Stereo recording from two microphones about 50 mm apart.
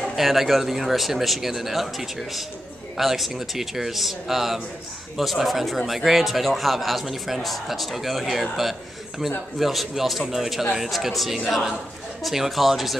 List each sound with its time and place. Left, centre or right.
0.1 s speech: centre